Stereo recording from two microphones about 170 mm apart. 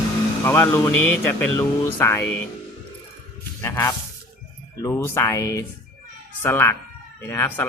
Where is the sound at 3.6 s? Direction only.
15° left (ahead or behind).